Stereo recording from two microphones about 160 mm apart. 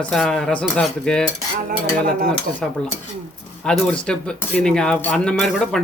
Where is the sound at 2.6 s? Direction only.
5° left (ahead or behind).